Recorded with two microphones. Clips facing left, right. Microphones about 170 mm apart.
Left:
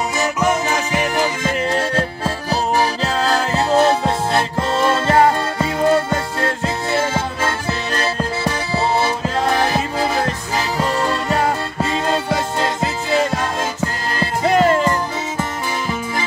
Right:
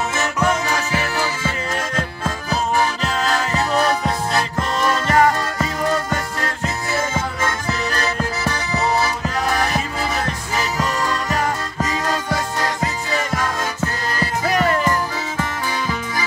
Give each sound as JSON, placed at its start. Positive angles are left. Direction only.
{"t": 0.2, "sound": "music", "side_deg": 15}
{"t": 1.7, "sound": "music", "side_deg": 30}